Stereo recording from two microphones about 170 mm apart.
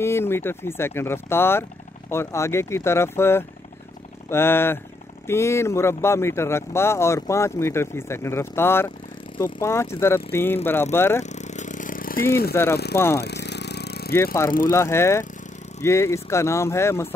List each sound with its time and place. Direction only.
0.0 s speech: 15° left (ahead or behind)
11.2 s vehicle: 45° left (ahead or behind)
12.6 s speech: 15° left (ahead or behind)
13.2 s vehicle: 80° left
14.1 s speech: 15° left (ahead or behind)